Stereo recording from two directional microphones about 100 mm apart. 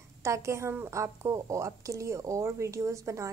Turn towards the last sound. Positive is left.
turn(degrees=-30)  # may be behind; listen again after turning